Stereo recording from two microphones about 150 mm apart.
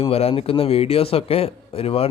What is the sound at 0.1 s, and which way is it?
A man's voice, 40° left (ahead or behind).